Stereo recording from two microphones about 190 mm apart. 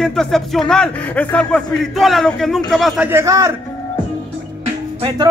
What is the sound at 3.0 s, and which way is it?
Speech, 15° right (ahead or behind).